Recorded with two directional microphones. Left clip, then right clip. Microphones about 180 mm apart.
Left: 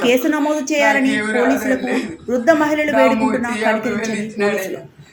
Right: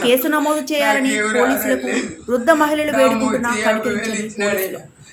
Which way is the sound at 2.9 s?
15° left (ahead or behind).